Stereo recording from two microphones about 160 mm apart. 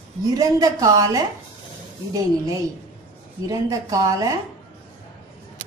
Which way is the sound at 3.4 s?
20° right (ahead or behind).